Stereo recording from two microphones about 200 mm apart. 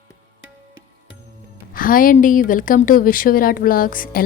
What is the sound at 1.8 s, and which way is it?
Speech, 45° left (ahead or behind).